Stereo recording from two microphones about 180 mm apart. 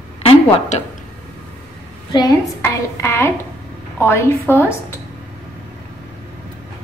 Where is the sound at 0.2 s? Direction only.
35° left (ahead or behind).